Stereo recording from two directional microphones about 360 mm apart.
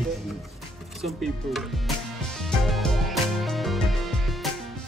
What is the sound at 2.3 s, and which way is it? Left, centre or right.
Music, centre.